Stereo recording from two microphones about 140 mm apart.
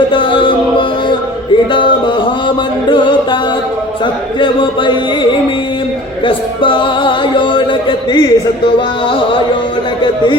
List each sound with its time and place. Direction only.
0.1 s music: 35° left (ahead or behind)
4.4 s a sound: 35° left (ahead or behind)
6.2 s music: 35° left (ahead or behind)